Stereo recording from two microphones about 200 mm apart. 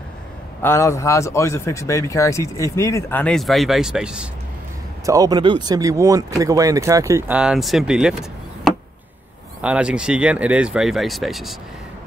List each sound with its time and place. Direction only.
0.6 s speech: 15° left (ahead or behind); by 4.3 s 5° right (ahead or behind)
5.0 s speech: 15° right (ahead or behind); by 11.5 s centre (ahead or behind)